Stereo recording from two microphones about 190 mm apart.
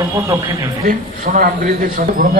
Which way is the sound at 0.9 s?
45° right (ahead or behind).